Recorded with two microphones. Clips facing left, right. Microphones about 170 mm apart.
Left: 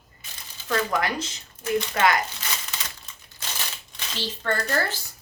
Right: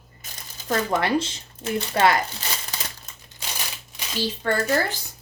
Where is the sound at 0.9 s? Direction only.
30° right (ahead or behind).